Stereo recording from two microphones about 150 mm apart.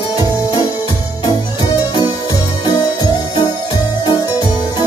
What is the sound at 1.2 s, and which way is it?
Music, 25° left (ahead or behind).